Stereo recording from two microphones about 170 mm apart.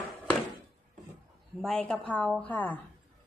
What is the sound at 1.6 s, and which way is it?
A woman's voice, 5° left (ahead or behind).